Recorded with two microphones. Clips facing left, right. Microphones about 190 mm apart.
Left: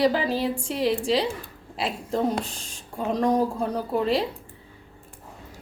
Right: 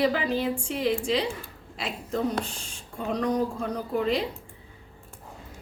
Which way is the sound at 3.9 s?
35° left (ahead or behind).